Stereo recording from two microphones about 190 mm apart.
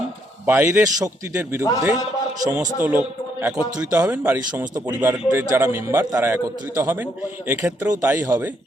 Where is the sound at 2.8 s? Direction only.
10° right (ahead or behind).